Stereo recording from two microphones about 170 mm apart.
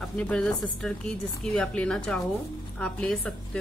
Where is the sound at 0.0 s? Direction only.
5° left (ahead or behind).